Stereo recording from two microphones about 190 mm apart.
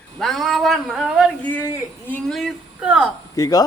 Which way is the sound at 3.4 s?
20° left (ahead or behind).